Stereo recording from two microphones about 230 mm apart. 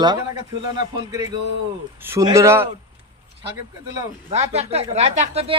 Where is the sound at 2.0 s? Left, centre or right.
Centre.